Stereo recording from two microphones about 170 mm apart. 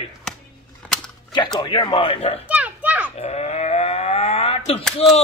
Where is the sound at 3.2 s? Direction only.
40° left (ahead or behind).